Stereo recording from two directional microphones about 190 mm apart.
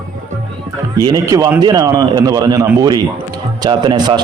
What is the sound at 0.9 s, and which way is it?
A man's voice, 20° right (ahead or behind).